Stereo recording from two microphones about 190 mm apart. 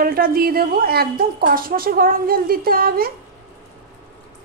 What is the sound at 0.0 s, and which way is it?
A woman's voice, 50° right (ahead or behind).